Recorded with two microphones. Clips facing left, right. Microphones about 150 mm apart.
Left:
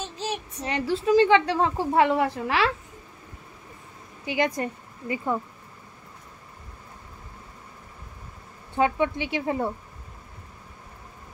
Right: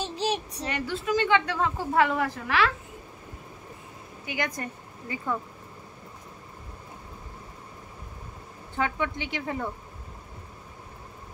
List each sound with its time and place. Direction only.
0.7 s a woman's voice: 25° left (ahead or behind)
4.3 s a woman's voice: 25° left (ahead or behind)
8.7 s a woman's voice: 20° left (ahead or behind)